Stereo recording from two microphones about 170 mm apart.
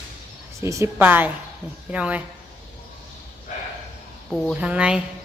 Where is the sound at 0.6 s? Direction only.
15° right (ahead or behind).